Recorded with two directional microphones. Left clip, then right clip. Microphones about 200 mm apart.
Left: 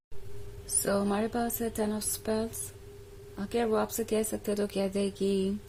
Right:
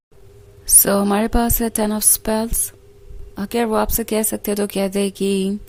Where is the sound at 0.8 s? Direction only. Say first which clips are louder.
Right 11 dB; 45° right (ahead or behind).